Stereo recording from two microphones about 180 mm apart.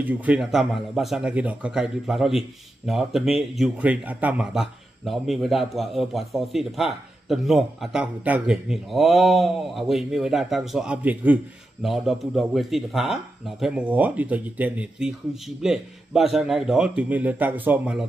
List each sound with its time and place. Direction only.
0.0 s speech: 10° right (ahead or behind)